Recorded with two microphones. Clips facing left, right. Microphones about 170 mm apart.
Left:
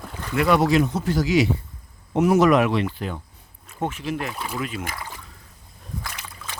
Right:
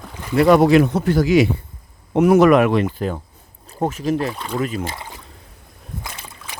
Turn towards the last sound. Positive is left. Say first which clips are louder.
# right 1 dB
turn(degrees=-20)  # may be behind; listen again after turning